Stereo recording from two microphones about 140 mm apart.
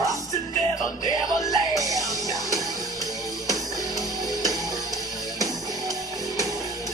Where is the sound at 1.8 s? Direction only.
25° right (ahead or behind).